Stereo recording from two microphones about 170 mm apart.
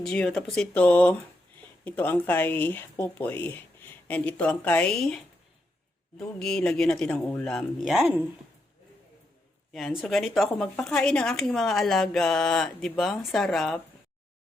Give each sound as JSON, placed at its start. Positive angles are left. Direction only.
{"t": 0.0, "sound": "speech", "side_deg": 5}
{"t": 9.7, "sound": "speech", "side_deg": 0}